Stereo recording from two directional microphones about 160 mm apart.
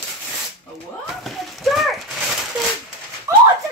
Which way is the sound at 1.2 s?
Centre (ahead or behind).